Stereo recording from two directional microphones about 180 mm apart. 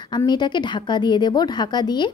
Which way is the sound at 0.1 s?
25° left (ahead or behind).